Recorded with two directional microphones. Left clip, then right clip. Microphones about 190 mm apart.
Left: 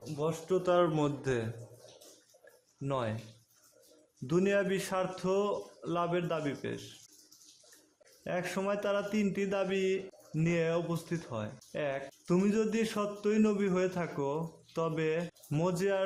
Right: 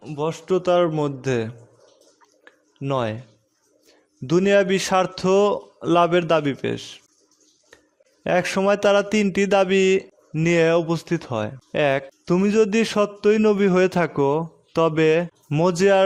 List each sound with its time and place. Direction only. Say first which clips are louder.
0.2 s a man's voice: right 10 dB; 45° right (ahead or behind)
0.7 s a man's voice: right 9 dB; 30° right (ahead or behind)
2.8 s a man's voice: right 11 dB; 40° right (ahead or behind)
4.3 s a man's voice: right 12 dB; 40° right (ahead or behind)
8.2 s a man's voice: right 15 dB; 50° right (ahead or behind)